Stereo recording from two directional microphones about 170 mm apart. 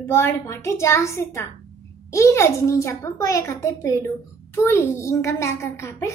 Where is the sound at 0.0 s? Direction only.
15° left (ahead or behind).